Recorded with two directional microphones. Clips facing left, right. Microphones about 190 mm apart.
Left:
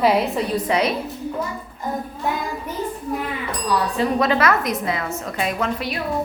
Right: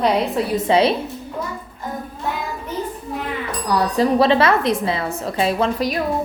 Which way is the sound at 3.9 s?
35° right (ahead or behind).